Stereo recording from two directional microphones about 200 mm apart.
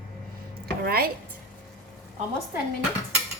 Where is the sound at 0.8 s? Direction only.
50° right (ahead or behind).